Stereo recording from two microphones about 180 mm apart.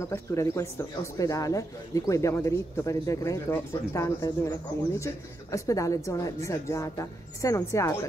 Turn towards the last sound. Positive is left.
turn(degrees=15)  # may be behind; listen again after turning